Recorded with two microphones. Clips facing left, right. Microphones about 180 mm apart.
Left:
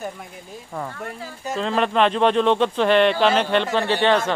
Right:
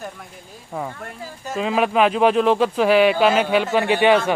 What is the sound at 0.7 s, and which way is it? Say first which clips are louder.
Speech: right 1 dB; 5° right (ahead or behind).